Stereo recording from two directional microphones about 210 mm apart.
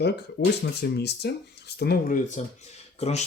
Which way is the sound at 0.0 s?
50° left (ahead or behind).